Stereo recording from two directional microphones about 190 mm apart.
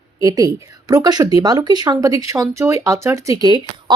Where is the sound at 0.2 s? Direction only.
15° right (ahead or behind).